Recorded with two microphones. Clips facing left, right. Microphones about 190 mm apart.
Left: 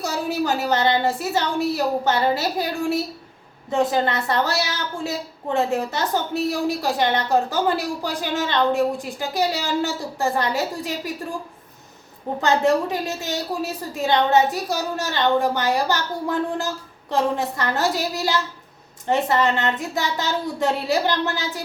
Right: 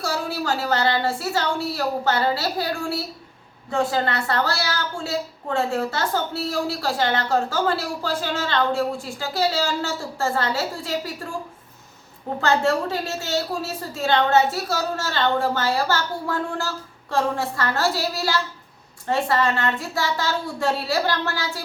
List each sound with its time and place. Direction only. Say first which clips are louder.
0.0 s a woman's voice: left 2 dB; 20° left (ahead or behind)
12.4 s a woman's voice: left 2 dB; 15° left (ahead or behind)